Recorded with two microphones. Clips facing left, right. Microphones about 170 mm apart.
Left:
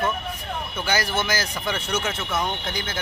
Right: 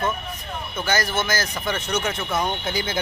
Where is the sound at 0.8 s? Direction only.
10° left (ahead or behind).